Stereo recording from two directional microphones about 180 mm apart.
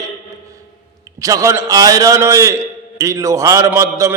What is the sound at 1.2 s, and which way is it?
A man's voice, 20° right (ahead or behind).